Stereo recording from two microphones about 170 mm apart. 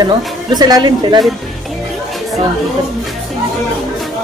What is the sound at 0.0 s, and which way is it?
Speech, 25° right (ahead or behind).